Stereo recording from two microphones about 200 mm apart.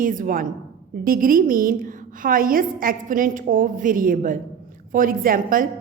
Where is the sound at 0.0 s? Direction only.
40° right (ahead or behind).